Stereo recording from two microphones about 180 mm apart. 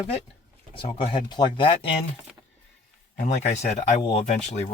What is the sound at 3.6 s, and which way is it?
Speech, 30° left (ahead or behind).